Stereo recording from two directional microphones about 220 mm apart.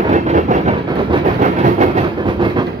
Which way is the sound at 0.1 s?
35° right (ahead or behind).